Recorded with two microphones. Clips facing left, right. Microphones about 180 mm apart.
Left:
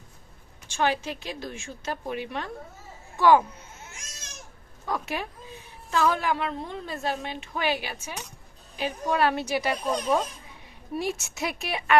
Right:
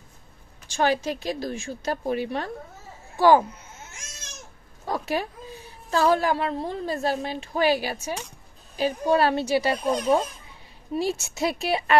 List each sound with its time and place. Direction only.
0.7 s a woman's voice: 40° right (ahead or behind)
4.8 s a woman's voice: 35° right (ahead or behind)